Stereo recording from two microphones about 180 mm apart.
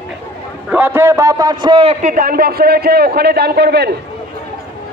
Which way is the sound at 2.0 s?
50° right (ahead or behind).